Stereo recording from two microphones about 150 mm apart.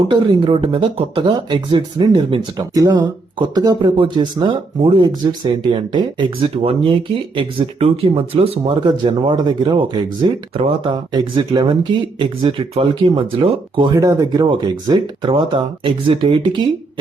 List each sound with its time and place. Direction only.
0.1 s speech: 35° right (ahead or behind)